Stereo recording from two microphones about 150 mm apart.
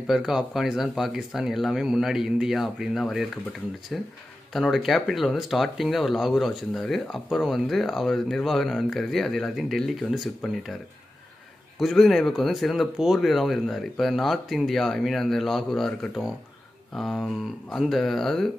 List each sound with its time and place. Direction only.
0.0 s speech: centre (ahead or behind)
11.8 s speech: centre (ahead or behind)